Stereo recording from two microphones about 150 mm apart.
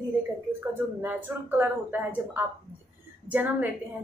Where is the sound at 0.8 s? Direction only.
15° right (ahead or behind).